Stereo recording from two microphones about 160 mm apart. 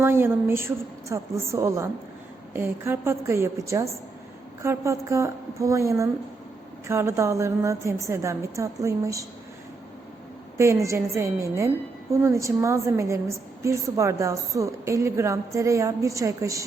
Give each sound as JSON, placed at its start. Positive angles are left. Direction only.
{"t": 0.0, "sound": "a woman's voice", "side_deg": -15}
{"t": 10.6, "sound": "a woman's voice", "side_deg": -20}